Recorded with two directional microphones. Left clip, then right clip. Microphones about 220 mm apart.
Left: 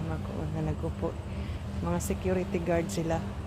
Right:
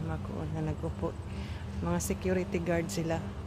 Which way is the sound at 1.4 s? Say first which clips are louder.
Left 2 dB; 10° right (ahead or behind).